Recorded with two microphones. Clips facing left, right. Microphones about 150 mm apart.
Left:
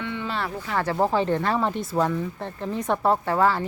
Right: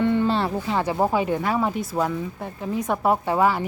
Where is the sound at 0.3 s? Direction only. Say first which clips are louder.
Right 4 dB; 30° right (ahead or behind).